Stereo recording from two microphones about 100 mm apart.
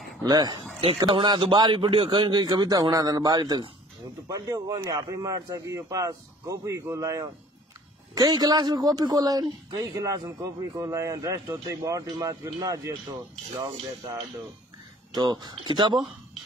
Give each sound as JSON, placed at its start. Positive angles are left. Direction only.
{"t": 0.2, "sound": "a man's voice", "side_deg": -45}
{"t": 1.1, "sound": "a man's voice", "side_deg": -60}
{"t": 1.8, "sound": "a man's voice", "side_deg": -60}
{"t": 15.1, "sound": "a man's voice", "side_deg": -45}